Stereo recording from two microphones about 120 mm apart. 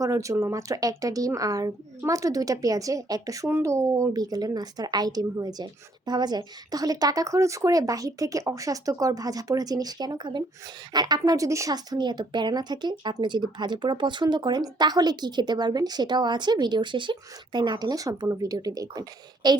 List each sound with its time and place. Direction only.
0.0 s a woman's voice: 25° right (ahead or behind)